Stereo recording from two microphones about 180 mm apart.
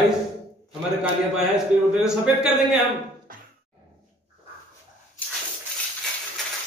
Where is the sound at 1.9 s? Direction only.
5° right (ahead or behind).